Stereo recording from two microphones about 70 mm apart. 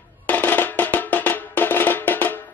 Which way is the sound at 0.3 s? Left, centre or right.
Left.